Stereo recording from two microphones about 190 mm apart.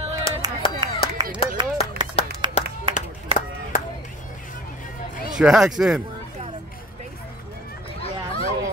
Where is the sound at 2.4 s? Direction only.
25° right (ahead or behind).